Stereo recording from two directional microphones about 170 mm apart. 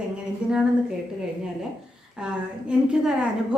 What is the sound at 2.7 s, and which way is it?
Speech, 5° right (ahead or behind).